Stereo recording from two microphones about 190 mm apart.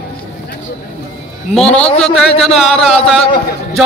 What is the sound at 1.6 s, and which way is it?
Speech, 5° left (ahead or behind).